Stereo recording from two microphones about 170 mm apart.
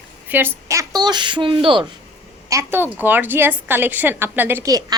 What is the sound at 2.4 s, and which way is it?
A woman's voice, 15° right (ahead or behind).